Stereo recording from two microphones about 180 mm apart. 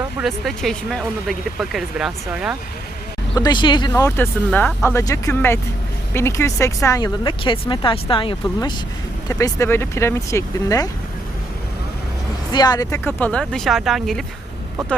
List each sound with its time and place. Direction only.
0.2 s speech: centre (ahead or behind)
3.3 s speech: 25° left (ahead or behind)
9.3 s speech: 15° left (ahead or behind)
12.5 s speech: 20° left (ahead or behind)
13.1 s speech: 10° left (ahead or behind)